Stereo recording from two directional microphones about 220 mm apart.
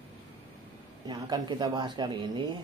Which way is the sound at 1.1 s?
20° right (ahead or behind).